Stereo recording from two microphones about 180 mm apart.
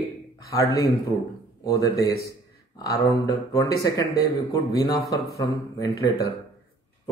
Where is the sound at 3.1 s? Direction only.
20° left (ahead or behind).